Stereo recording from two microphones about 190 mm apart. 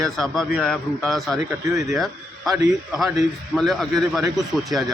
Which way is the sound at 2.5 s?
15° right (ahead or behind).